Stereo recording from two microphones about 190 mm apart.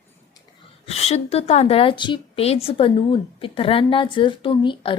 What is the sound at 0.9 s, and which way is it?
A woman's voice, 35° left (ahead or behind).